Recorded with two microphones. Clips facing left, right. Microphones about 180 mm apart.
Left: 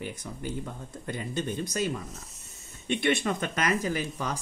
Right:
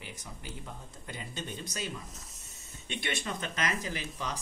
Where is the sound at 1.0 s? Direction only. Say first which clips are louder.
Left 9 dB; 50° left (ahead or behind).